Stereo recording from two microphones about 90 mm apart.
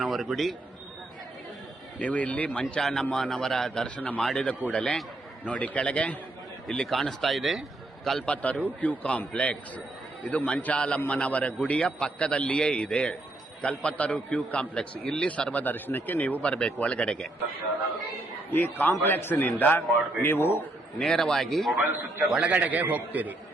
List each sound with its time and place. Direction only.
0.0 s a man's voice: centre (ahead or behind)
2.0 s a man's voice: 15° left (ahead or behind)
3.8 s a man's voice: 15° left (ahead or behind)
4.2 s speech: 5° left (ahead or behind)
4.7 s a man's voice: 15° left (ahead or behind); by 7.6 s centre (ahead or behind)
8.3 s a man's voice: 15° left (ahead or behind)
18.5 s a man's voice: 20° left (ahead or behind)
21.0 s speech: 5° left (ahead or behind)
22.4 s a man's voice: 15° right (ahead or behind)